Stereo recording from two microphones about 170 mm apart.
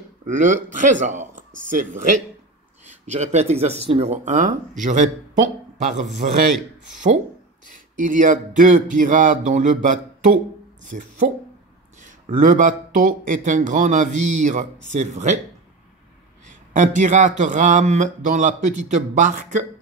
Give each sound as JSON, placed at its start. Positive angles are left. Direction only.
{"t": 0.3, "sound": "speech", "side_deg": -45}
{"t": 3.1, "sound": "speech", "side_deg": -40}
{"t": 7.6, "sound": "speech", "side_deg": -50}
{"t": 16.7, "sound": "speech", "side_deg": -45}